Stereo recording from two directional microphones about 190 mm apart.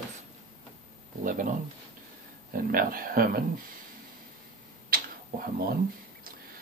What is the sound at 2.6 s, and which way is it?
Speech, 50° right (ahead or behind).